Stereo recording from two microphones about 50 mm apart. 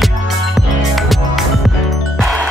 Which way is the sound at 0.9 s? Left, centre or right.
Centre.